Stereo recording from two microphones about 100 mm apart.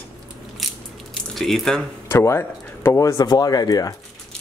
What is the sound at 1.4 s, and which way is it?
Speech, centre (ahead or behind).